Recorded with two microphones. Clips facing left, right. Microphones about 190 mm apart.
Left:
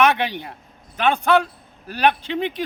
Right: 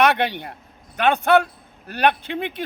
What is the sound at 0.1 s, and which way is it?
Speech, 60° right (ahead or behind).